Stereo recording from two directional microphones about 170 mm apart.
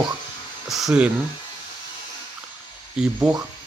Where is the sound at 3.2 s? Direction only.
20° right (ahead or behind).